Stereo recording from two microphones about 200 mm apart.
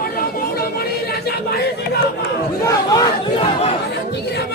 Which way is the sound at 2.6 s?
20° left (ahead or behind).